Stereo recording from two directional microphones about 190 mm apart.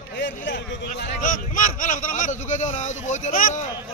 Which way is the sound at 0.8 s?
45° left (ahead or behind).